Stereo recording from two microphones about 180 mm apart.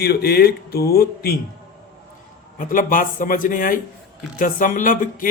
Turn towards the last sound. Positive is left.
turn(degrees=50)  # may be behind; listen again after turning